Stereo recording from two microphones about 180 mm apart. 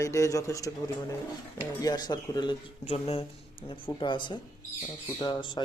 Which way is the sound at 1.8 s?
20° left (ahead or behind).